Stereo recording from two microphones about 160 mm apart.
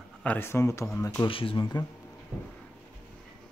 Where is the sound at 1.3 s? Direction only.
35° left (ahead or behind).